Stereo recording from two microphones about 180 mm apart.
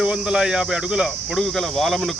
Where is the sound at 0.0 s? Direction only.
5° right (ahead or behind).